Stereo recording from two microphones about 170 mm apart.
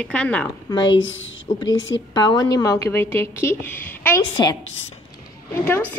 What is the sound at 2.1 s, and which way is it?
A woman's voice, 25° left (ahead or behind).